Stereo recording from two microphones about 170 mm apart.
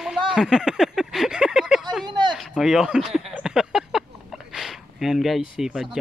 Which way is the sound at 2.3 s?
Centre (ahead or behind).